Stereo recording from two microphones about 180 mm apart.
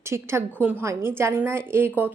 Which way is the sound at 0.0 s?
15° right (ahead or behind).